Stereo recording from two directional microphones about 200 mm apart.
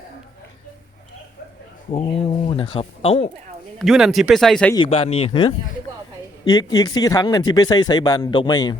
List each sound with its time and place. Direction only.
1.9 s speech: 30° left (ahead or behind)
3.8 s speech: centre (ahead or behind)
4.7 s speech: 25° left (ahead or behind)